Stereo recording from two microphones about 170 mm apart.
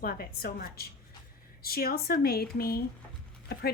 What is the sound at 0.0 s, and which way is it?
A woman's voice, 60° left (ahead or behind).